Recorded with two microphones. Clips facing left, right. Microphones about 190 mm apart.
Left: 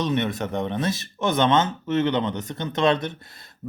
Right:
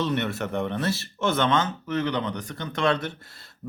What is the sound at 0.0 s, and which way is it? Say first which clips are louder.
Speech: left 2 dB; 15° left (ahead or behind).